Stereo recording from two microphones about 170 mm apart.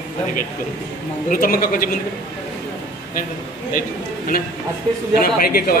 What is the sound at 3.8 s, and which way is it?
A man's voice, 55° left (ahead or behind).